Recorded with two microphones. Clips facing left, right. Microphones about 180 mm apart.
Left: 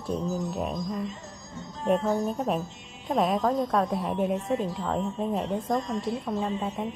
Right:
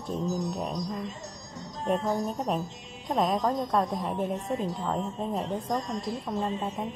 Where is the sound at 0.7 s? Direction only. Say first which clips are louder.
Left 2 dB; 40° right (ahead or behind).